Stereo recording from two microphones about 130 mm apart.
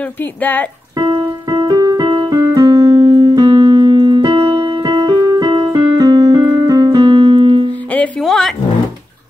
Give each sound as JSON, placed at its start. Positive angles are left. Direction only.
{"t": 0.2, "sound": "speech", "side_deg": 15}
{"t": 0.9, "sound": "keyboard", "side_deg": -40}
{"t": 2.0, "sound": "music", "side_deg": -40}
{"t": 2.3, "sound": "keyboard", "side_deg": -25}
{"t": 3.1, "sound": "keyboard", "side_deg": -40}
{"t": 4.8, "sound": "keyboard", "side_deg": -35}
{"t": 8.2, "sound": "vehicle", "side_deg": 0}